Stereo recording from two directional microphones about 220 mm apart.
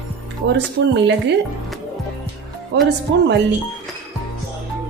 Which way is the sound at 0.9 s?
50° right (ahead or behind).